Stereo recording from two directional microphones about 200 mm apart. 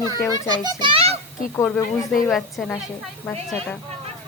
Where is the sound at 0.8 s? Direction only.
25° right (ahead or behind).